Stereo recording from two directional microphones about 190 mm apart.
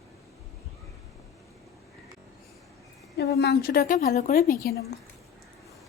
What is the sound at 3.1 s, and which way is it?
A woman's voice, 60° left (ahead or behind).